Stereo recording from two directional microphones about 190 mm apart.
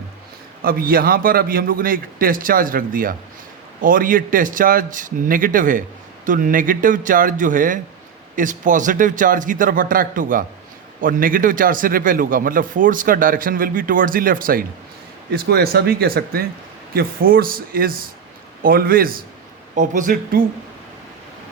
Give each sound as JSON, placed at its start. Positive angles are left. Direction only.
{"t": 0.6, "sound": "a man's voice", "side_deg": -50}